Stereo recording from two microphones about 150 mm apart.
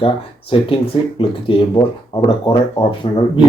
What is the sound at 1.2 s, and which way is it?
Speech, 35° left (ahead or behind).